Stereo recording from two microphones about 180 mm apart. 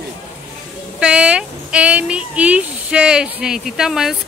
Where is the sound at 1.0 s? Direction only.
5° right (ahead or behind).